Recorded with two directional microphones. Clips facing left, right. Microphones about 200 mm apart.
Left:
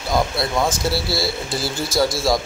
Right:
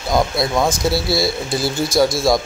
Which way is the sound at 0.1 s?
15° right (ahead or behind).